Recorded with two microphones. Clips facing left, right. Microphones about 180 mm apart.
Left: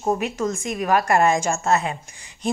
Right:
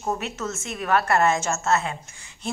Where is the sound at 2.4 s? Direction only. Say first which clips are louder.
Left 6 dB; 15° left (ahead or behind).